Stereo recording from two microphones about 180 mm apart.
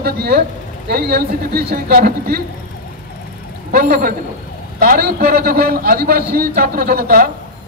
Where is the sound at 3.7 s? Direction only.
55° right (ahead or behind).